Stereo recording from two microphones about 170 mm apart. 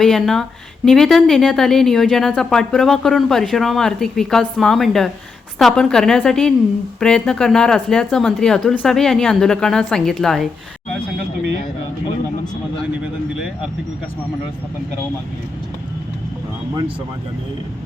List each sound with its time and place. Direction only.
0.0 s speech: centre (ahead or behind)